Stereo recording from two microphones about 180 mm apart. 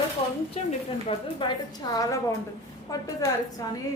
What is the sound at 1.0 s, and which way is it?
A woman's voice, 25° left (ahead or behind).